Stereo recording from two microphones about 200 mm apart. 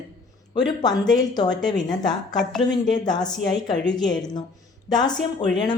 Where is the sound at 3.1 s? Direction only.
20° left (ahead or behind).